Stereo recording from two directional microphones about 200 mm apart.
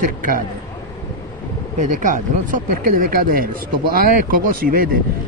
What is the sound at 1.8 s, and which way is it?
Speech, 40° right (ahead or behind).